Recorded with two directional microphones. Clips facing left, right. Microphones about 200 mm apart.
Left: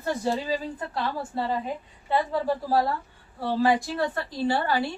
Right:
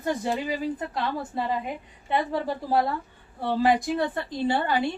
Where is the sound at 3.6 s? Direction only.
20° right (ahead or behind).